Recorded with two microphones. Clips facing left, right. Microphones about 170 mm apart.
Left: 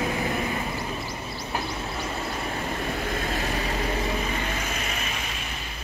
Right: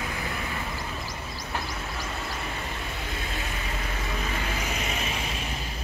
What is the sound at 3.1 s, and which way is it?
Vehicle, 50° left (ahead or behind).